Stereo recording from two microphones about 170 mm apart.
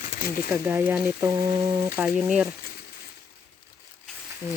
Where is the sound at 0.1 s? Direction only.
60° left (ahead or behind).